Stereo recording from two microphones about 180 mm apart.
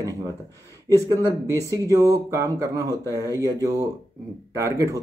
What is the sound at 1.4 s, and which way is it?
Speech, 20° right (ahead or behind).